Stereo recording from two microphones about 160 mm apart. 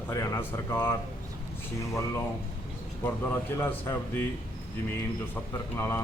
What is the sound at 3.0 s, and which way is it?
Speech, 15° left (ahead or behind).